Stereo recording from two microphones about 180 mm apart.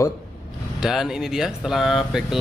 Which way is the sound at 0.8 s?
Centre (ahead or behind).